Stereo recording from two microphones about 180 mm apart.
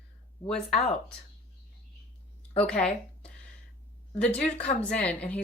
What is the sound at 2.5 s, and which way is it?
Speech, 5° left (ahead or behind).